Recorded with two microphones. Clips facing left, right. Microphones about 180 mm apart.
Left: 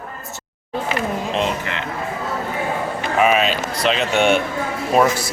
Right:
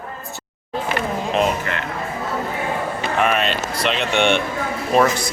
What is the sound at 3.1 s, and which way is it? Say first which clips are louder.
Speech: left 3 dB; 5° left (ahead or behind).